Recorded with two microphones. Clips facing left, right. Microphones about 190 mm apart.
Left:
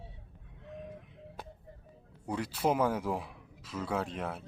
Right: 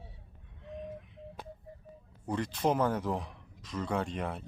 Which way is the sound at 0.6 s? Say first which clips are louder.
Right 3 dB; centre (ahead or behind).